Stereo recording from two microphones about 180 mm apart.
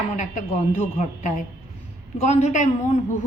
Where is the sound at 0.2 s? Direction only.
40° left (ahead or behind).